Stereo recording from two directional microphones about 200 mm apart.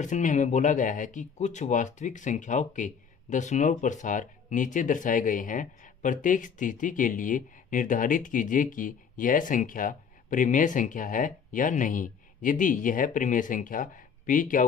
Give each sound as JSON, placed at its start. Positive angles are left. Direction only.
{"t": 0.0, "sound": "speech", "side_deg": 40}